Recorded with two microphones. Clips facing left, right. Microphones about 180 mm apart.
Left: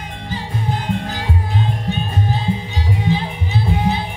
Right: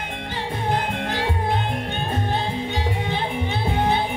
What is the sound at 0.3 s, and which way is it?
Music, 60° right (ahead or behind).